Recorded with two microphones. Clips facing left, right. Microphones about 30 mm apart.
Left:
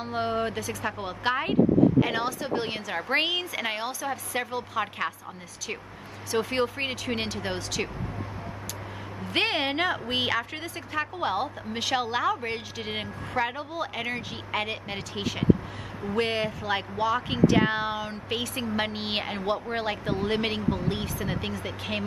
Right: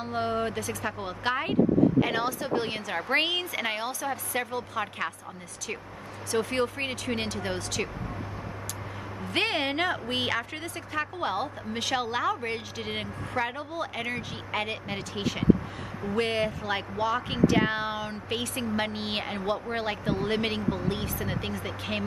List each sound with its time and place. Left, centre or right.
0.0 s a woman's voice: centre
2.5 s a woman's voice: centre
2.9 s a woman's voice: centre
6.3 s a woman's voice: centre
9.3 s a woman's voice: centre
18.6 s a woman's voice: centre
19.8 s a woman's voice: centre